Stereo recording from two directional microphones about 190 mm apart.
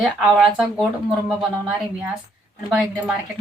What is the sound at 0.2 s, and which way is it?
Speech, centre (ahead or behind).